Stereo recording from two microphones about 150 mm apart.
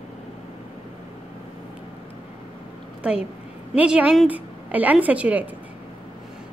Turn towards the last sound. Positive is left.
turn(degrees=-10)  # may be behind; listen again after turning